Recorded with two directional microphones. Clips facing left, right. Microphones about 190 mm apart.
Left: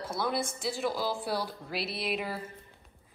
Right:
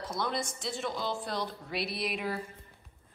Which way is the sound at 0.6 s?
Centre (ahead or behind).